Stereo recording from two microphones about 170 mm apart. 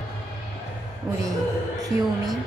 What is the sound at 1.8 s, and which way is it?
Speech, 20° right (ahead or behind).